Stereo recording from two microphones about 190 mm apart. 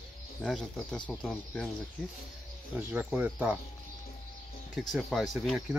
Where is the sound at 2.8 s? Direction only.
10° right (ahead or behind).